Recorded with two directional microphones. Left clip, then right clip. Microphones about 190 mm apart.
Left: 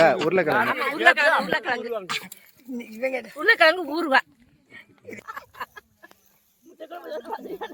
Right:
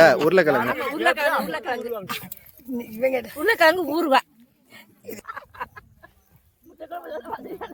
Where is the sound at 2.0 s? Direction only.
30° right (ahead or behind).